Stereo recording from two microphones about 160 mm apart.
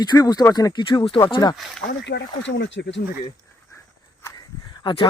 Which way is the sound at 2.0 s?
90° left.